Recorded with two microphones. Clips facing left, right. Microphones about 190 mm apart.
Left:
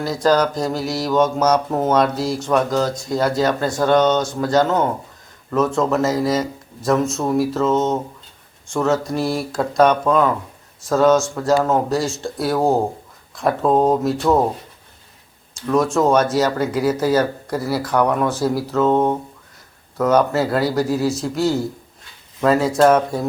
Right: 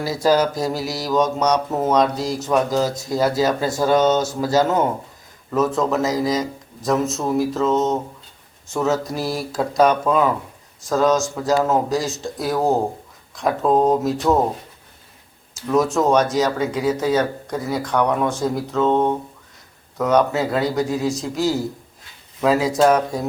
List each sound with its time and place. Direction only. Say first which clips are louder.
0.0 s speech: left 1 dB; 5° right (ahead or behind)
15.5 s speech: left 1 dB; 5° right (ahead or behind)